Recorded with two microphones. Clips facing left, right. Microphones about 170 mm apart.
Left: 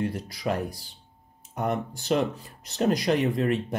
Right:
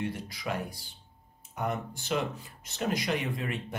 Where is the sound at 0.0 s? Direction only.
35° left (ahead or behind).